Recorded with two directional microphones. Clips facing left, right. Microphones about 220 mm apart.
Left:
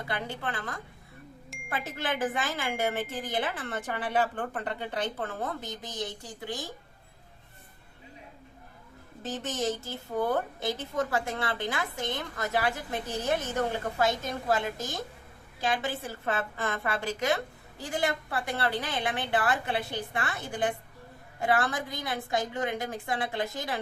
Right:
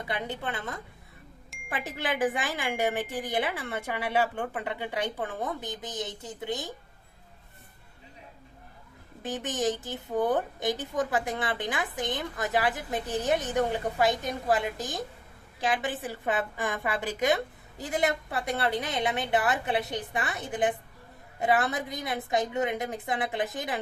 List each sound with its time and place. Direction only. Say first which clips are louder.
0.1 s a woman's voice: right 2 dB; 20° right (ahead or behind)
1.5 s wind chime: left 5 dB; centre (ahead or behind)
2.0 s a woman's voice: right 3 dB; 15° right (ahead or behind)
9.2 s a woman's voice: right 2 dB; 15° right (ahead or behind)